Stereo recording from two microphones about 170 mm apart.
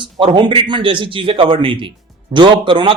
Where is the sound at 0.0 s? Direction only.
30° right (ahead or behind).